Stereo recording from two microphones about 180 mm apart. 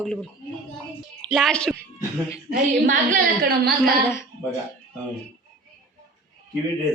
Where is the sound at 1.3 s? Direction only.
Centre (ahead or behind).